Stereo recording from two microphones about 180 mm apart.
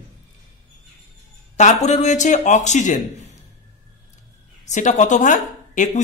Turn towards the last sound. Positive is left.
turn(degrees=45)  # may be behind; listen again after turning